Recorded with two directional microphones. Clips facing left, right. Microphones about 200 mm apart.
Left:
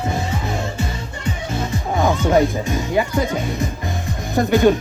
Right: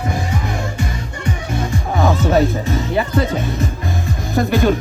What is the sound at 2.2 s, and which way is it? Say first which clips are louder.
Speech: right 1 dB; 15° left (ahead or behind).